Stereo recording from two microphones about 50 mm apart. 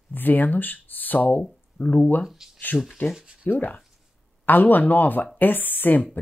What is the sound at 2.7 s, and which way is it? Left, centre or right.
Speech, left.